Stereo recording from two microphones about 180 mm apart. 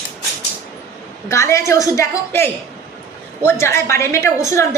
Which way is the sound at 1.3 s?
15° left (ahead or behind).